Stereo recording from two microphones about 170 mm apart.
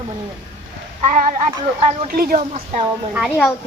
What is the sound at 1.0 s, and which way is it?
Speech, 50° right (ahead or behind).